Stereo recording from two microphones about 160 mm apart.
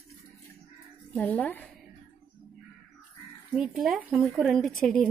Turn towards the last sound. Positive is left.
turn(degrees=5)  # may be behind; listen again after turning